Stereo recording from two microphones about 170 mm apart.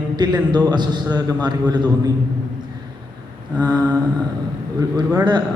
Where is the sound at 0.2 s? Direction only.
25° right (ahead or behind).